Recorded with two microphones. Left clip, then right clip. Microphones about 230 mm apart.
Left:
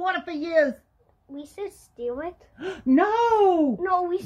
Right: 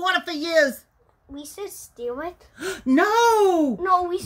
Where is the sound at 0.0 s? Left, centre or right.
Right.